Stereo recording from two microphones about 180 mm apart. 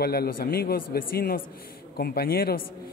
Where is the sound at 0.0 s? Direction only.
60° left (ahead or behind).